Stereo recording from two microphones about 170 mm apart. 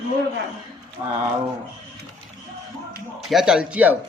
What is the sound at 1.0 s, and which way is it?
Speech, 20° right (ahead or behind).